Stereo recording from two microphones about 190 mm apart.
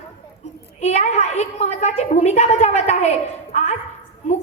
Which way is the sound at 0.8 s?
35° left (ahead or behind).